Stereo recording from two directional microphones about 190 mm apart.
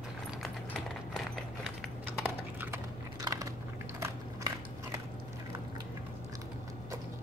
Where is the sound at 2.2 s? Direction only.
10° right (ahead or behind).